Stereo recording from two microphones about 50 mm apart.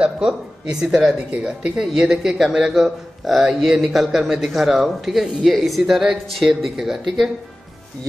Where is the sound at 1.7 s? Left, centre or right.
Centre.